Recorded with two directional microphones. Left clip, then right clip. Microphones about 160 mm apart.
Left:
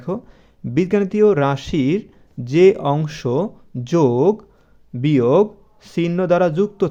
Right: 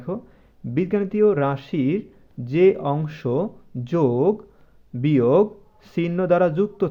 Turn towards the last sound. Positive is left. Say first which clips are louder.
# left 3 dB
turn(degrees=20)  # may be behind; listen again after turning